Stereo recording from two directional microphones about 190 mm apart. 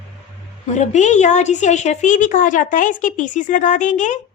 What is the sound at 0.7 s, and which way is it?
A woman's voice, 40° left (ahead or behind).